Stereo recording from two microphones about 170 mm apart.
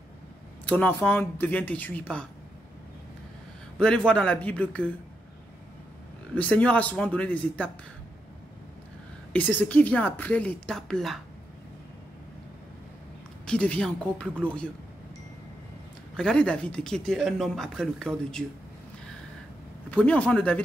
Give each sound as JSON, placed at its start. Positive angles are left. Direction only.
{"t": 0.7, "sound": "a woman's voice", "side_deg": 10}
{"t": 3.7, "sound": "a woman's voice", "side_deg": 5}
{"t": 6.3, "sound": "a woman's voice", "side_deg": 5}
{"t": 9.3, "sound": "a woman's voice", "side_deg": 10}
{"t": 13.5, "sound": "speech", "side_deg": 5}
{"t": 16.2, "sound": "speech", "side_deg": 5}
{"t": 19.9, "sound": "a woman's voice", "side_deg": 10}